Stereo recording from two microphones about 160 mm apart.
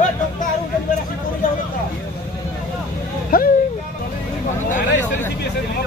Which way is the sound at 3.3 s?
65° left (ahead or behind).